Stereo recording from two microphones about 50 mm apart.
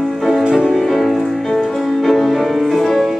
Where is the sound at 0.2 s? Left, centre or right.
Centre.